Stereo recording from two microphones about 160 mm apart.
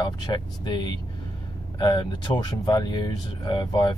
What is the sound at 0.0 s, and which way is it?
Speech, 30° left (ahead or behind).